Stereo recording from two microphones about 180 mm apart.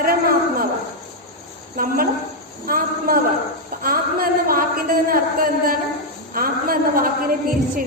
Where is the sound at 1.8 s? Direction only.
50° right (ahead or behind).